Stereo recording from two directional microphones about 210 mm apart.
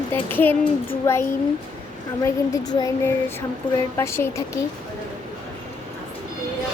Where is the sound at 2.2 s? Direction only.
15° left (ahead or behind).